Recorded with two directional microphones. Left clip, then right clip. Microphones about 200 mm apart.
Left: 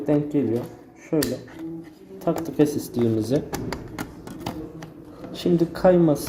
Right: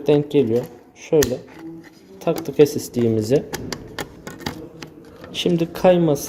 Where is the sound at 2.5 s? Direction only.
25° right (ahead or behind).